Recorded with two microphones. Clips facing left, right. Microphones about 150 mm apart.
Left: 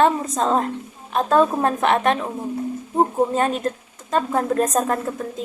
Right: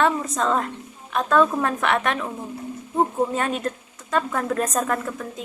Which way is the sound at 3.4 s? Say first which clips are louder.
Left 4 dB; 35° left (ahead or behind).